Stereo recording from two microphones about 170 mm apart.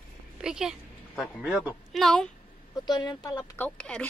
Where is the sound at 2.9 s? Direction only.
25° left (ahead or behind); by 4.1 s 5° left (ahead or behind).